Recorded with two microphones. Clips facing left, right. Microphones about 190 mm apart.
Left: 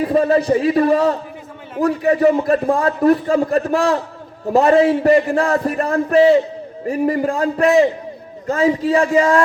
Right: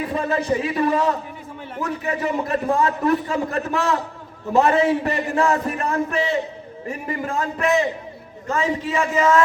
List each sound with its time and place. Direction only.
0.0 s a man's voice: 35° left (ahead or behind)